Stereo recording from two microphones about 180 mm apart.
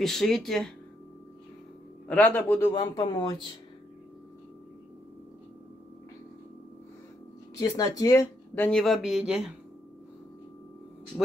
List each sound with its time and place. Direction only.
0.0 s speech: centre (ahead or behind)
2.0 s speech: 10° left (ahead or behind)
2.7 s speech: 25° left (ahead or behind)
7.5 s speech: 20° left (ahead or behind); by 9.4 s 5° right (ahead or behind)